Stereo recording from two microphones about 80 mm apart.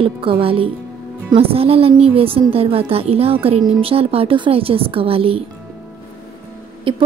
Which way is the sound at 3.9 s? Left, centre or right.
Right.